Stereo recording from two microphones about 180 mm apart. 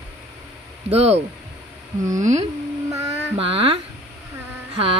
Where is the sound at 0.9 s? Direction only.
35° right (ahead or behind).